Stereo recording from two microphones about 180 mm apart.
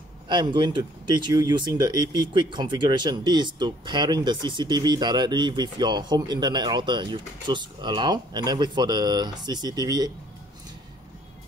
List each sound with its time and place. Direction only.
0.3 s speech: 25° right (ahead or behind)